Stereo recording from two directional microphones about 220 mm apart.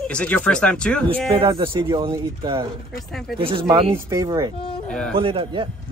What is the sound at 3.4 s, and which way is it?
Speech, 25° right (ahead or behind).